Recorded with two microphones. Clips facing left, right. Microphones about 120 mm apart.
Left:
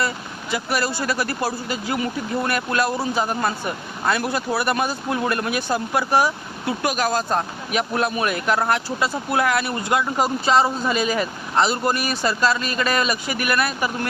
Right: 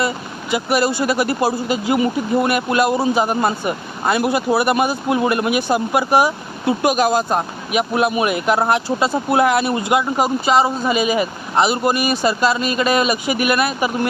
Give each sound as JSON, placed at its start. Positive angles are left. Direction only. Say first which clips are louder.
{"t": 0.5, "sound": "speech", "louder": "right 6 dB", "side_deg": -20}